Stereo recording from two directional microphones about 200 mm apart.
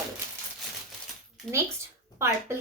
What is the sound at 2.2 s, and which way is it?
Speech, 15° right (ahead or behind).